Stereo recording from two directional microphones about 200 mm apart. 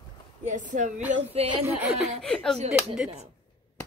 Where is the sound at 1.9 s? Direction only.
Centre (ahead or behind).